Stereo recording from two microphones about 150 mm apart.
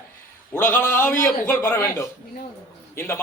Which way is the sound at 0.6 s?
15° left (ahead or behind).